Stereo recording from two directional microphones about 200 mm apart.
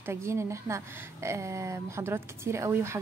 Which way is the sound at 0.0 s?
15° right (ahead or behind).